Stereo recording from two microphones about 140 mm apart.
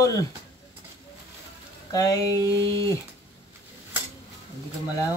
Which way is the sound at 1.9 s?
25° left (ahead or behind).